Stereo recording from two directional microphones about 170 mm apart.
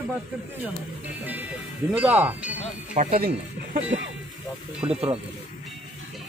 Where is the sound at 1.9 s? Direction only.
10° right (ahead or behind).